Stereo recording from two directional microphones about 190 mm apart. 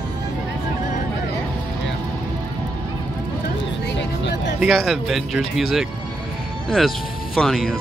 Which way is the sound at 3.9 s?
65° left (ahead or behind).